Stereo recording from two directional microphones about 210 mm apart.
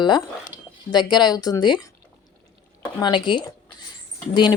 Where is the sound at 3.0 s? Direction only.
20° left (ahead or behind).